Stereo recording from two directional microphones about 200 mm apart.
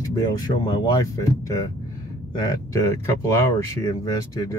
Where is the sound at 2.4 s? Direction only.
15° left (ahead or behind).